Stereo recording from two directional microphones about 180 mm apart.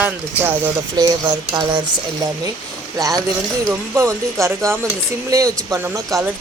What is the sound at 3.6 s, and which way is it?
Speech, 15° right (ahead or behind).